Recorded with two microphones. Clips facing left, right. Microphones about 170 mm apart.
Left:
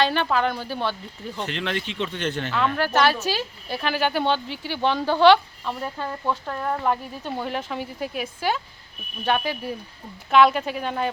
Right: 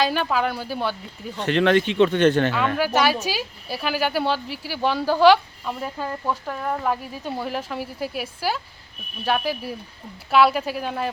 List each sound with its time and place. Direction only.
0.0 s speech: 5° right (ahead or behind)
1.5 s speech: 60° right (ahead or behind)
2.7 s speech: 10° right (ahead or behind)